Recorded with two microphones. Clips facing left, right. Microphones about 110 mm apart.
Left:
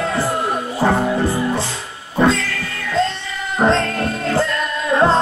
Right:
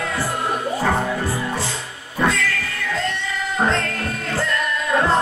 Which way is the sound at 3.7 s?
25° left (ahead or behind).